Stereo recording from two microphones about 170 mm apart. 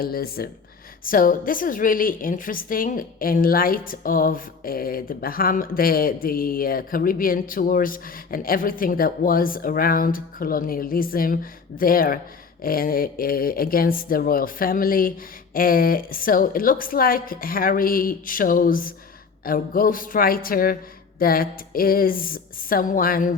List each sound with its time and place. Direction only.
0.0 s a woman's voice: 60° left (ahead or behind)